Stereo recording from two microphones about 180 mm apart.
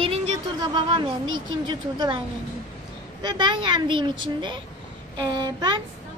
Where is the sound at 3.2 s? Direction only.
25° right (ahead or behind).